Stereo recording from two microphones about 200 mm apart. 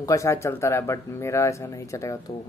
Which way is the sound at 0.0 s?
15° left (ahead or behind).